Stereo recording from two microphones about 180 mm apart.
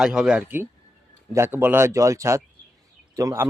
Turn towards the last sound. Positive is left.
turn(degrees=-15)  # may be behind; listen again after turning